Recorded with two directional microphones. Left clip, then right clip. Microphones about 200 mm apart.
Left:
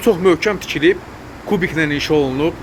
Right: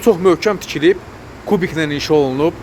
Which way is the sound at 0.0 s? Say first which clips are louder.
Right 1 dB; 20° right (ahead or behind).